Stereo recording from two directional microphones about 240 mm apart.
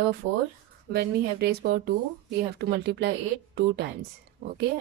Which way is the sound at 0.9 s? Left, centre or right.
Right.